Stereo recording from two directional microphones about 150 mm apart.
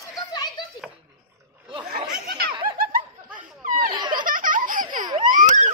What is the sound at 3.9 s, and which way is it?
Baby laughter, 30° right (ahead or behind).